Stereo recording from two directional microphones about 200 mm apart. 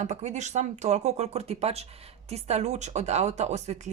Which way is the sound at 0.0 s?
35° right (ahead or behind).